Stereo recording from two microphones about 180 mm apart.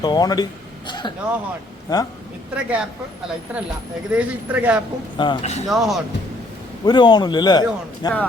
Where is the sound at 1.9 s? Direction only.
20° left (ahead or behind).